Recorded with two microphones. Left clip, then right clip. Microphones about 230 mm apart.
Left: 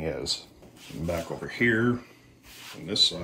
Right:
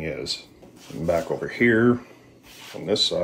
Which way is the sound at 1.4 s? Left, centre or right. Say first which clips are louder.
Right 2 dB; centre.